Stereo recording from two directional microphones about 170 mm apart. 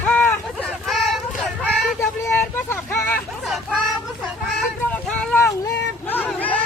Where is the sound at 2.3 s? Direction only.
10° left (ahead or behind).